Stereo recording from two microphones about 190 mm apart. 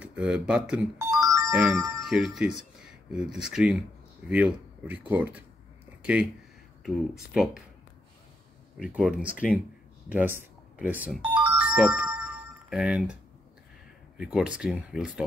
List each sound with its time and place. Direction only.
0.0 s speech: 5° right (ahead or behind)
0.9 s music: 15° right (ahead or behind)
1.5 s speech: centre (ahead or behind)
6.8 s speech: centre (ahead or behind)
8.7 s speech: 5° right (ahead or behind)
11.2 s music: 5° right (ahead or behind)
14.1 s speech: 5° right (ahead or behind)